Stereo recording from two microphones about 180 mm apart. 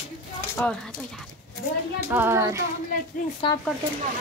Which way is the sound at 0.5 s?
5° left (ahead or behind).